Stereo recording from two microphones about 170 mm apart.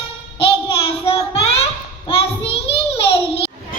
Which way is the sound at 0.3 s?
35° left (ahead or behind).